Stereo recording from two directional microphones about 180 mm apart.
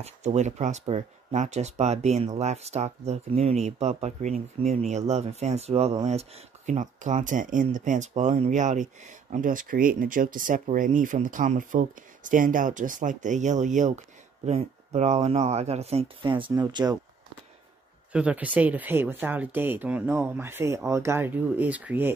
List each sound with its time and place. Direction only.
0.0 s speech: 40° right (ahead or behind); by 17.0 s 20° right (ahead or behind)
18.1 s speech: 5° right (ahead or behind)